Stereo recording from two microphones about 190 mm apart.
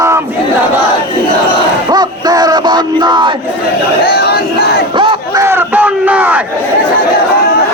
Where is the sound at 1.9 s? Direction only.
20° right (ahead or behind).